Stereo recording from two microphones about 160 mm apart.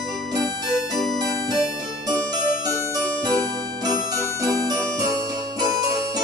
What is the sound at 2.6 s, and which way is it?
Music, 20° right (ahead or behind).